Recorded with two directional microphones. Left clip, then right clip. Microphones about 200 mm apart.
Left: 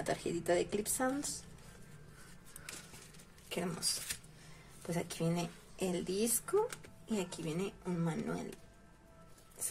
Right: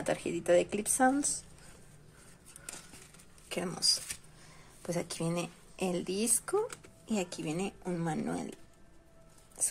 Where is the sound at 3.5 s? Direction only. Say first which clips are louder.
Right 4 dB; 25° right (ahead or behind).